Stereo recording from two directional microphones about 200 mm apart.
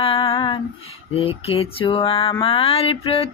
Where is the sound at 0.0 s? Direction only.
30° left (ahead or behind).